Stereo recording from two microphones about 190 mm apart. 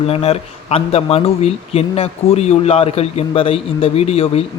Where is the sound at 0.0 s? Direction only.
30° left (ahead or behind).